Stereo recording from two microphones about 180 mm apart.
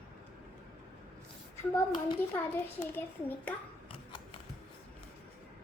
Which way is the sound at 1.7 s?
25° left (ahead or behind).